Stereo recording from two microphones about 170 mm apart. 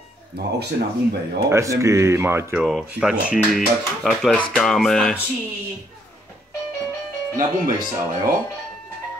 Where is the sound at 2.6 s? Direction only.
5° right (ahead or behind).